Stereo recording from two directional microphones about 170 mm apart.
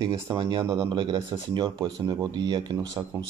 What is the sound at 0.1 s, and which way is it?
Speech, 30° right (ahead or behind).